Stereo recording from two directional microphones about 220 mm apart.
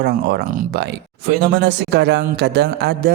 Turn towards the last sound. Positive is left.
turn(degrees=-50)  # may be behind; listen again after turning